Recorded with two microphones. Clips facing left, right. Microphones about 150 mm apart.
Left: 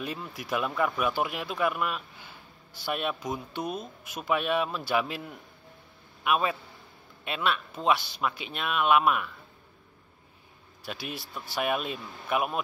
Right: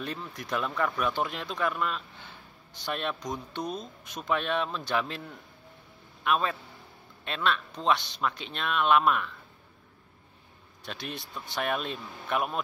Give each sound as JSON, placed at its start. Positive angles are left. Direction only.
{"t": 0.0, "sound": "a man's voice", "side_deg": 10}
{"t": 10.8, "sound": "speech", "side_deg": 5}